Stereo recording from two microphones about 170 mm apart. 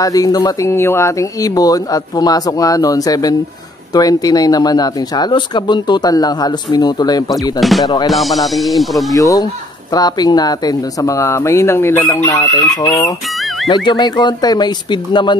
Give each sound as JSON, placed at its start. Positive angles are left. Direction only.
{"t": 0.0, "sound": "speech", "side_deg": 20}
{"t": 8.1, "sound": "speech", "side_deg": 0}
{"t": 9.1, "sound": "speech", "side_deg": 20}